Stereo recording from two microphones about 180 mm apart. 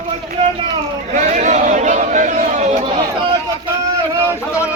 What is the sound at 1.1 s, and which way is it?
Chatter, 45° right (ahead or behind).